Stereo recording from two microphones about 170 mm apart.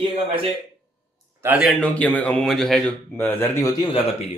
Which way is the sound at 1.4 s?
5° right (ahead or behind).